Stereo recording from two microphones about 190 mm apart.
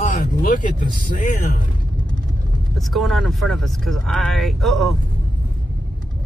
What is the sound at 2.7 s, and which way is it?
Speech, centre (ahead or behind).